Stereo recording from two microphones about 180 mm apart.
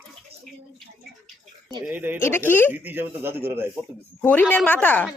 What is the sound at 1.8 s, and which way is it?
Speech, 10° right (ahead or behind).